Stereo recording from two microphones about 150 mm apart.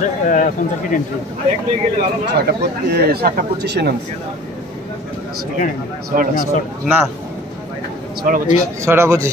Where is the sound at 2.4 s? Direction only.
90° right.